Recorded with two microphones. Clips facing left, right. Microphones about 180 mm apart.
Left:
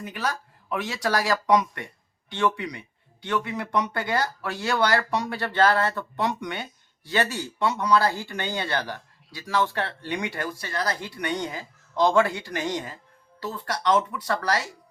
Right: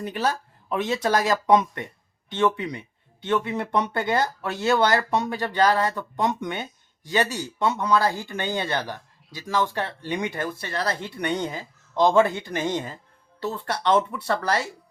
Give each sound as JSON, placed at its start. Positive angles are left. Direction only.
{"t": 0.0, "sound": "speech", "side_deg": -30}